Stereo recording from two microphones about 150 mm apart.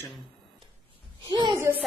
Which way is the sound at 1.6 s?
15° right (ahead or behind).